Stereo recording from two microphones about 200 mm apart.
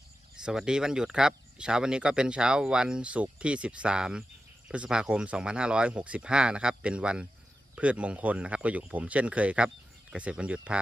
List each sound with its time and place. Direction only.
0.4 s speech: 5° right (ahead or behind)